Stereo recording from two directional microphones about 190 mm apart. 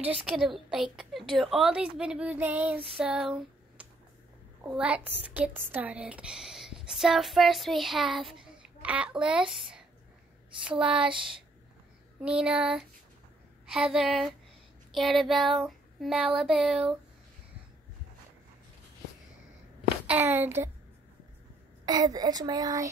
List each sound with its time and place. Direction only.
0.0 s speech: 5° right (ahead or behind)
2.0 s child singing: 5° right (ahead or behind)
3.0 s speech: 5° right (ahead or behind)
10.8 s speech: 5° right (ahead or behind)
12.2 s speech: 5° right (ahead or behind)
14.9 s child singing: centre (ahead or behind)
16.3 s speech: centre (ahead or behind)
20.1 s child singing: 10° right (ahead or behind)
21.8 s a child's voice: 20° right (ahead or behind)